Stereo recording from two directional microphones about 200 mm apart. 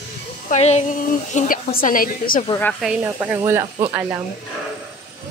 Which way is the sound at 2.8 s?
5° right (ahead or behind).